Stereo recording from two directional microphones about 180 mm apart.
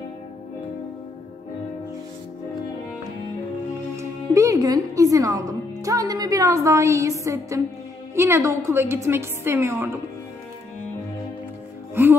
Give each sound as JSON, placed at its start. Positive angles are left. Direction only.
{"t": 3.9, "sound": "a woman's voice", "side_deg": -15}
{"t": 11.9, "sound": "music", "side_deg": -10}